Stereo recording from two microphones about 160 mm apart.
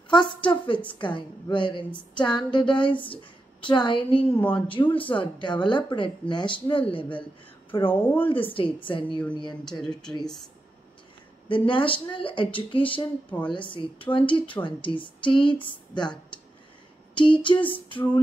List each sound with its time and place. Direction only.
0.1 s a woman's voice: 30° left (ahead or behind)
4.4 s speech: 10° left (ahead or behind)
4.6 s speech: 30° left (ahead or behind)
7.9 s speech: 10° left (ahead or behind)
8.5 s a woman's voice: 35° left (ahead or behind)
9.7 s speech: 5° left (ahead or behind)
11.4 s speech: 30° left (ahead or behind)